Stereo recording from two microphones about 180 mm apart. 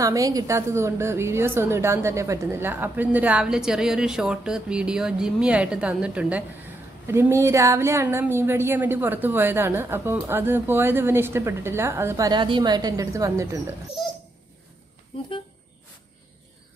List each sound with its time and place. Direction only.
0.0 s a woman's voice: 20° right (ahead or behind)